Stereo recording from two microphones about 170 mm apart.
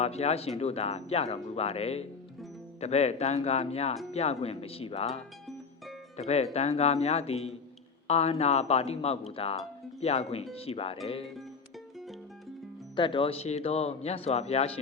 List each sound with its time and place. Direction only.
0.0 s speech: 40° left (ahead or behind)
13.0 s speech: 30° left (ahead or behind)